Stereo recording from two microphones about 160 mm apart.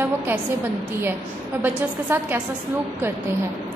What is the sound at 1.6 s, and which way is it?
Speech, 10° right (ahead or behind).